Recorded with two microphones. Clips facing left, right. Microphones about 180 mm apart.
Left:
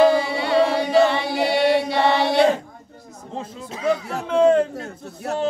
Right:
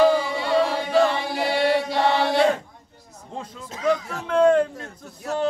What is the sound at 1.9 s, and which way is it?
Chant, 70° left (ahead or behind).